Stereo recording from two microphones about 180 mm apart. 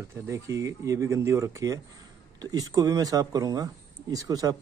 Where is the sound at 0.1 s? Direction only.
15° right (ahead or behind).